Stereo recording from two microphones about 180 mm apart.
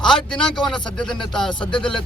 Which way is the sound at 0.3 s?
5° left (ahead or behind).